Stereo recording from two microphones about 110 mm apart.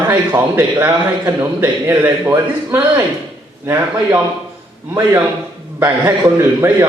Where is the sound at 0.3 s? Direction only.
25° right (ahead or behind).